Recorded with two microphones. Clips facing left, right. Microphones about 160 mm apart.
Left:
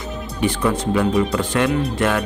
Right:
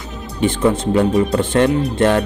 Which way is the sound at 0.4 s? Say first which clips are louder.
Right 4 dB; 25° right (ahead or behind).